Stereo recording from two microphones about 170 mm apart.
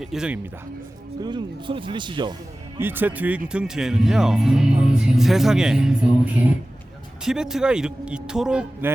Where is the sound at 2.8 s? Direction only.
10° right (ahead or behind).